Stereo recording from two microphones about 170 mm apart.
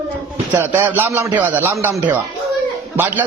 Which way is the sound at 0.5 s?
15° right (ahead or behind).